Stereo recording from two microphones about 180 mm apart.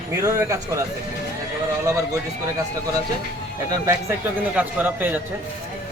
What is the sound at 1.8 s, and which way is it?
Speech, 20° right (ahead or behind).